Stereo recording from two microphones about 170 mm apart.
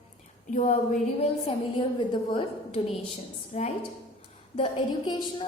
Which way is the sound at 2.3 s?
40° left (ahead or behind).